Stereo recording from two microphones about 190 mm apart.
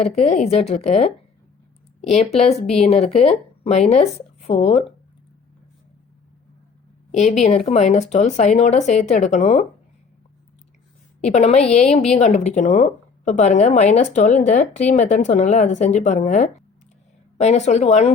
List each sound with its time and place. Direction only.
0.2 s a woman's voice: 35° left (ahead or behind)
7.2 s a woman's voice: 35° left (ahead or behind)
11.2 s a woman's voice: 35° left (ahead or behind)